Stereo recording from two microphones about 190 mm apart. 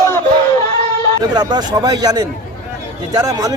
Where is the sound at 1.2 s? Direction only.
20° right (ahead or behind).